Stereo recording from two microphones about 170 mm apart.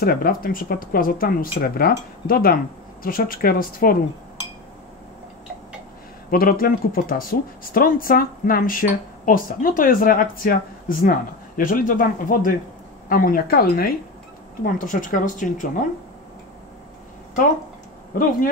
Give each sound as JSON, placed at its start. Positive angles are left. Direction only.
{"t": 0.0, "sound": "speech", "side_deg": 60}
{"t": 6.3, "sound": "speech", "side_deg": 60}
{"t": 14.6, "sound": "speech", "side_deg": 50}